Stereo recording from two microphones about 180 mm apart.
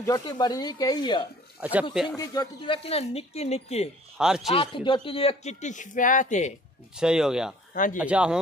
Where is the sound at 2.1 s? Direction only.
25° left (ahead or behind).